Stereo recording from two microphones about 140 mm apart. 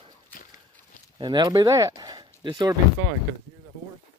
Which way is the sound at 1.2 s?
30° right (ahead or behind).